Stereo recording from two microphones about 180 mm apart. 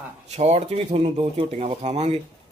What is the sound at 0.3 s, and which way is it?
A man's voice, 35° right (ahead or behind).